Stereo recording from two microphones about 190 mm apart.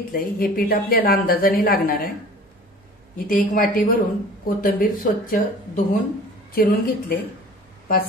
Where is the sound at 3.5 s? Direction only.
45° left (ahead or behind).